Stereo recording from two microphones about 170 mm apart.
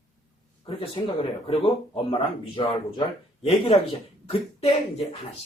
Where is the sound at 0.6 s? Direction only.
30° left (ahead or behind).